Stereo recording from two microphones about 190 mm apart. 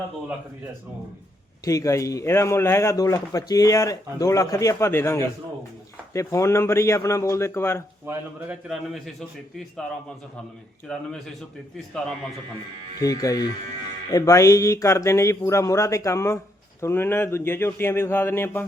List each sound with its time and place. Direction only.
1.6 s a man's voice: 15° left (ahead or behind)
8.0 s a man's voice: 10° right (ahead or behind)
10.8 s a man's voice: 5° left (ahead or behind)
13.0 s a man's voice: 20° left (ahead or behind)